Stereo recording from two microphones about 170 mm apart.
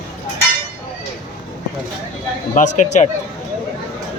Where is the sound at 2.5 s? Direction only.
45° left (ahead or behind).